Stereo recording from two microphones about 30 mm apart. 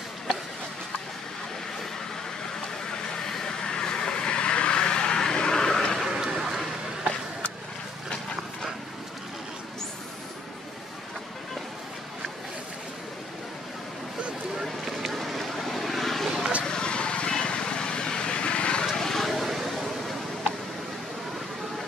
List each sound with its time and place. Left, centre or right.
2.9 s vehicle: left
5.9 s a sound: centre
14.9 s vehicle: centre
15.1 s vehicle: centre
16.6 s vehicle: left
18.9 s vehicle: centre
19.2 s vehicle: centre